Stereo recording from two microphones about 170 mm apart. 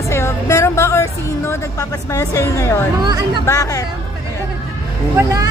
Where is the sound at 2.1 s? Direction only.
20° left (ahead or behind).